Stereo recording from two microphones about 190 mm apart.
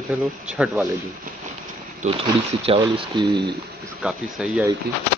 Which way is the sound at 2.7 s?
25° right (ahead or behind).